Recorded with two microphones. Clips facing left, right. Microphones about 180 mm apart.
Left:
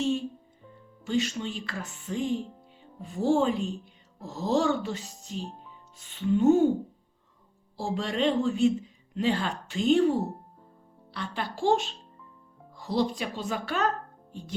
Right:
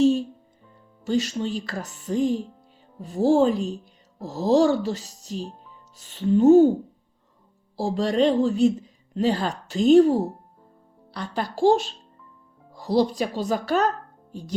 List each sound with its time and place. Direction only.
1.0 s speech: 35° right (ahead or behind)
7.8 s speech: 35° right (ahead or behind)